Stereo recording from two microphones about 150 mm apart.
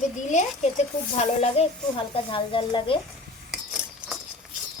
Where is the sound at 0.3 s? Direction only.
55° left (ahead or behind).